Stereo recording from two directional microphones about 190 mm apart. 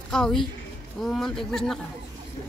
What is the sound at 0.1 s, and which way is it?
A woman's voice, 5° left (ahead or behind).